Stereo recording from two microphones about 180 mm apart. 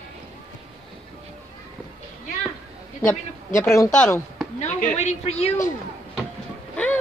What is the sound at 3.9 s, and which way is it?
Speech, 5° left (ahead or behind).